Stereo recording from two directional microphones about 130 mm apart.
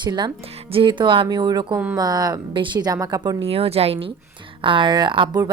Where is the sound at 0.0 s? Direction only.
35° right (ahead or behind).